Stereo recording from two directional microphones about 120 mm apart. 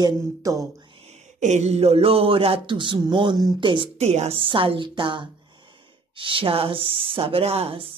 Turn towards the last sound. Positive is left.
turn(degrees=-55)  # may be behind; listen again after turning